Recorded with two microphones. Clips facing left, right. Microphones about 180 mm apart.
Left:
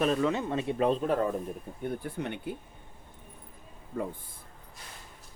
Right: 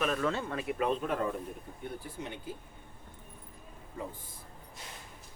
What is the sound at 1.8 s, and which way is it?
Speech, 60° left (ahead or behind).